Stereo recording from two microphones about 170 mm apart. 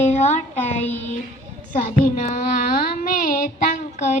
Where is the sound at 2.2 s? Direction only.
40° left (ahead or behind).